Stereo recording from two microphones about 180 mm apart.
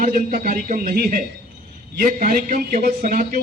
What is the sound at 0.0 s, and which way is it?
A man's voice, 50° right (ahead or behind).